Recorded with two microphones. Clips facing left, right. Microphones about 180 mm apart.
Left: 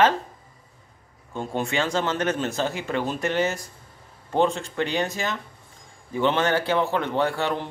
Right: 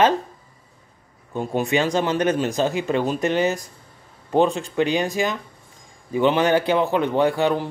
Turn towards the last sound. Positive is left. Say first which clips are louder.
# right 5 dB
turn(degrees=-15)  # may be behind; listen again after turning